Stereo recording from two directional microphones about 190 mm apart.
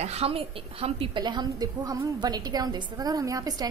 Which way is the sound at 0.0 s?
30° right (ahead or behind).